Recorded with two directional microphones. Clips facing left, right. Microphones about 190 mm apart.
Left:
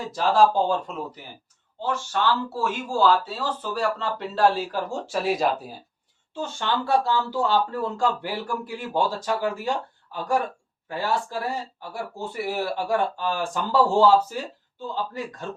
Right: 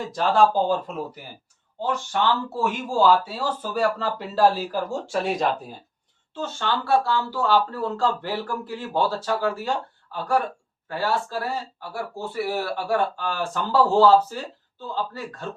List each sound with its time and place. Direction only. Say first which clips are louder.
0.1 s speech: even; centre (ahead or behind)
1.8 s speech: right 1 dB; 15° right (ahead or behind); by 5.5 s centre (ahead or behind)
6.3 s speech: even; 15° left (ahead or behind)